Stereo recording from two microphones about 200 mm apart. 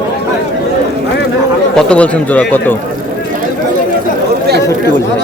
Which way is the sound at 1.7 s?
5° left (ahead or behind).